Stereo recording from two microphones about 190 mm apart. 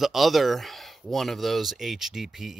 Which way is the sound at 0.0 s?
Centre (ahead or behind).